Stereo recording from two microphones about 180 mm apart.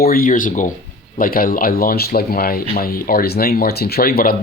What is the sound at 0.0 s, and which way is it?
Speech, 55° left (ahead or behind).